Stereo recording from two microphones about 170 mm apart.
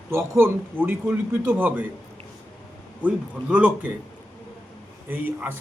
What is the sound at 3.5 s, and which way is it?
Speech, 10° right (ahead or behind).